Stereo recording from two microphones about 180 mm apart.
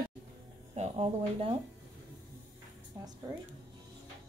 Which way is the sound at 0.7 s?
35° right (ahead or behind).